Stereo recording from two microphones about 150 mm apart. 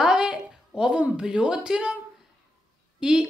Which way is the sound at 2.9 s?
5° right (ahead or behind).